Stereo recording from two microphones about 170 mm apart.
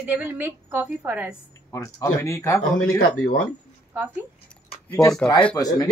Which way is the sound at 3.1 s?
55° left (ahead or behind).